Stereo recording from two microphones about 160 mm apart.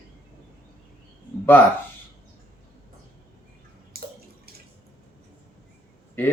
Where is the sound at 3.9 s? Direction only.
75° right (ahead or behind).